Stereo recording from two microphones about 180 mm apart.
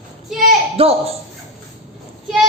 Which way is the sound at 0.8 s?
35° right (ahead or behind).